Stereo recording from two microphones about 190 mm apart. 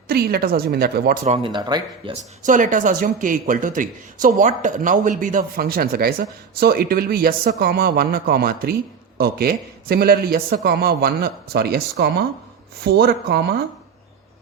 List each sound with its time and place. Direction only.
0.1 s speech: 55° right (ahead or behind)
1.2 s speech: 30° right (ahead or behind)
2.1 s a man's voice: 40° right (ahead or behind); by 13.6 s 55° right (ahead or behind)